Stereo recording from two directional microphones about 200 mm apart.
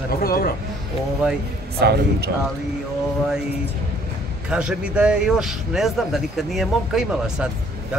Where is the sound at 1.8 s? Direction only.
55° right (ahead or behind).